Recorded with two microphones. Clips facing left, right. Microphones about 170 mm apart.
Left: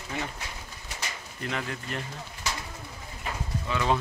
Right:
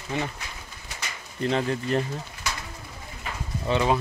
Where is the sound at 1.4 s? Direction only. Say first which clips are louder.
Right 9 dB; 30° right (ahead or behind).